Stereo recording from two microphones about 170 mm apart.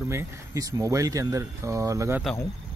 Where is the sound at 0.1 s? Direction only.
15° right (ahead or behind).